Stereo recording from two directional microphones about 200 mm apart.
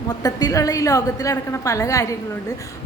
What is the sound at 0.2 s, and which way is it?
A woman's voice, 20° left (ahead or behind).